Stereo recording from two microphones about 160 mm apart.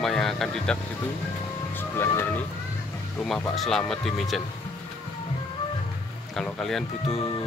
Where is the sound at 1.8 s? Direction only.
15° left (ahead or behind).